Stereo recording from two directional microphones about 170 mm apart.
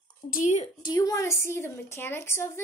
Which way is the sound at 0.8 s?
20° left (ahead or behind).